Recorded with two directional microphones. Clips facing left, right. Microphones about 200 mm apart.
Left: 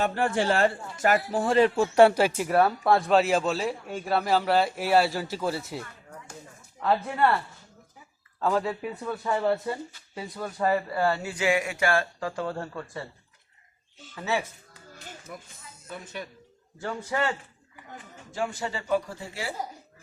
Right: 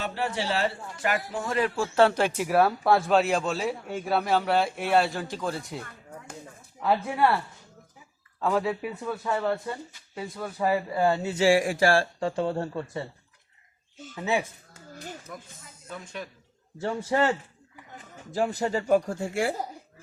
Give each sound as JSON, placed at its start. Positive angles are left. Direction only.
{"t": 0.0, "sound": "a man's voice", "side_deg": 50}
{"t": 6.7, "sound": "speech", "side_deg": -5}
{"t": 8.4, "sound": "a man's voice", "side_deg": 0}
{"t": 9.3, "sound": "a man's voice", "side_deg": 10}
{"t": 14.2, "sound": "speech", "side_deg": -15}
{"t": 15.3, "sound": "a man's voice", "side_deg": 10}
{"t": 18.3, "sound": "speech", "side_deg": -40}